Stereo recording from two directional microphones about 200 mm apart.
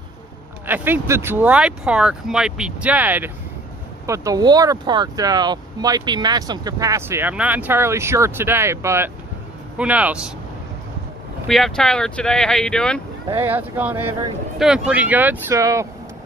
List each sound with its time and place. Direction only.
0.7 s speech: 10° right (ahead or behind)
11.4 s speech: centre (ahead or behind)
13.3 s speech: 10° right (ahead or behind)